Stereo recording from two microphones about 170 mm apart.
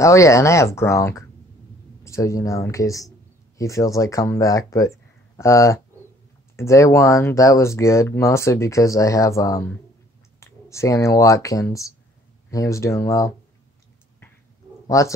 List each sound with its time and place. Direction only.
0.0 s speech: 15° left (ahead or behind)
14.9 s speech: 20° left (ahead or behind)